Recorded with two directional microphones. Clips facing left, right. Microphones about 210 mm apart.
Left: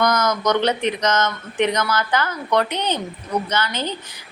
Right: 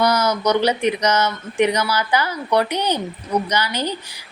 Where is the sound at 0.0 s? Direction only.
10° right (ahead or behind).